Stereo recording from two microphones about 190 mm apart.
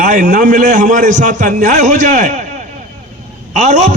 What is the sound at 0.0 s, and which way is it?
A man's voice, 45° right (ahead or behind).